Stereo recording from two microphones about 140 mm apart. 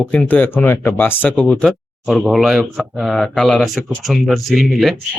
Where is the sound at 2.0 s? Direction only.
Centre (ahead or behind).